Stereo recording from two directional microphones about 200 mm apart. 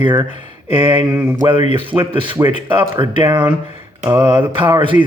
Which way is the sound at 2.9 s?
25° right (ahead or behind).